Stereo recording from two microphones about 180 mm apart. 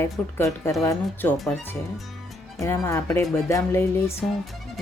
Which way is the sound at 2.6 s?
15° left (ahead or behind).